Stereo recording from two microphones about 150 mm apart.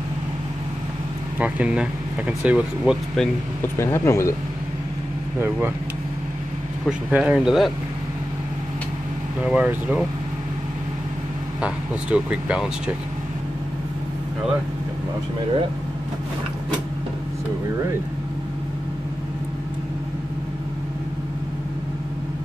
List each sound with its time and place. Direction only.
1.4 s speech: 10° right (ahead or behind)
3.7 s speech: 15° left (ahead or behind)
6.9 s speech: 10° right (ahead or behind)
9.4 s speech: 10° right (ahead or behind)
11.6 s speech: 5° right (ahead or behind)